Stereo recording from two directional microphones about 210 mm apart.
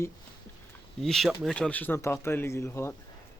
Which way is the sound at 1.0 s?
Centre (ahead or behind).